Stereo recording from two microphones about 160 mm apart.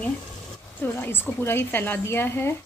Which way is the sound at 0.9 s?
15° left (ahead or behind).